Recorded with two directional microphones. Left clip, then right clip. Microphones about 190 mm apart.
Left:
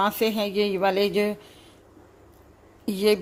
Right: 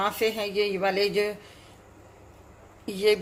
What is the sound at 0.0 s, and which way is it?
A woman's voice, 40° left (ahead or behind).